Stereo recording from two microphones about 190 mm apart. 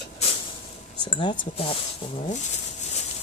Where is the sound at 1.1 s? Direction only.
25° left (ahead or behind).